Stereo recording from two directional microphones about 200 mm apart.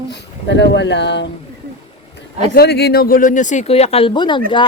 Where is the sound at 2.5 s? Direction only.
55° left (ahead or behind).